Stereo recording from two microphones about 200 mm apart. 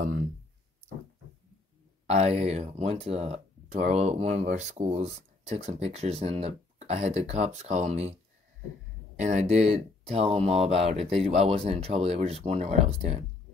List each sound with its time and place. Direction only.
2.0 s speech: 35° right (ahead or behind)
9.2 s speech: 35° right (ahead or behind)